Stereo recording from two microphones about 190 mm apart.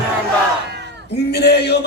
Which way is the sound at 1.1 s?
60° left (ahead or behind).